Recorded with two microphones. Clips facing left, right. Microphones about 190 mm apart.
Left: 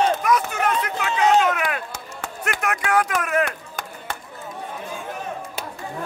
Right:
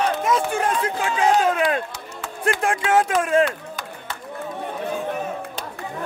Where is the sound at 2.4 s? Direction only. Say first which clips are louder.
Right 4 dB; 30° right (ahead or behind).